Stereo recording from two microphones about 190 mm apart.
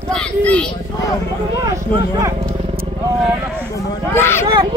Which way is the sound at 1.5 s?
15° right (ahead or behind).